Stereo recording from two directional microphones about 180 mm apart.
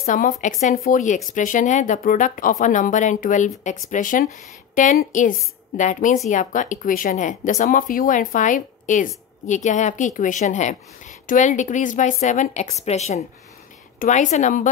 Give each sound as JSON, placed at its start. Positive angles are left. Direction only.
{"t": 0.2, "sound": "speech", "side_deg": 45}